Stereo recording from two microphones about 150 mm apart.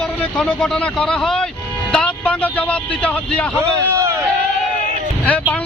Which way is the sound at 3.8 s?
20° right (ahead or behind).